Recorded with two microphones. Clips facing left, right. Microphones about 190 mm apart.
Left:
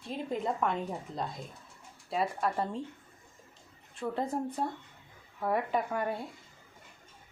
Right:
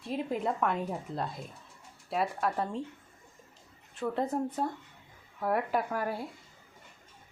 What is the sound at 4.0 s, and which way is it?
A woman's voice, centre (ahead or behind).